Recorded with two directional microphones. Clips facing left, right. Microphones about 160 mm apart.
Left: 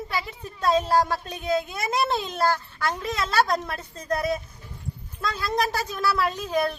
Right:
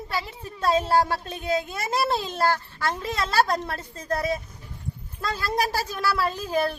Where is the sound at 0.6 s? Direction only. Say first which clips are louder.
Even; 5° right (ahead or behind).